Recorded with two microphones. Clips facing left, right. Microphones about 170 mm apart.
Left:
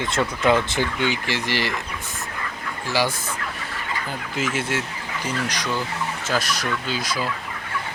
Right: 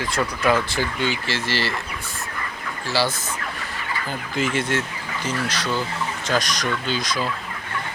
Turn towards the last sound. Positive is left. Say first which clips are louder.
# right 1 dB
turn(degrees=10)  # may be behind; listen again after turning